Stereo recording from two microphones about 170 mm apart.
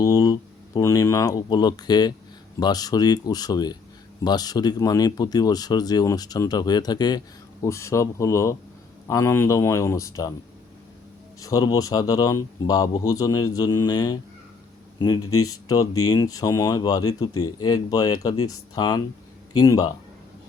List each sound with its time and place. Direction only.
0.0 s speech: 20° left (ahead or behind)
11.4 s speech: 20° left (ahead or behind)